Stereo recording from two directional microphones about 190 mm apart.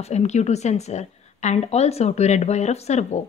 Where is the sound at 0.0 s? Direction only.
35° left (ahead or behind).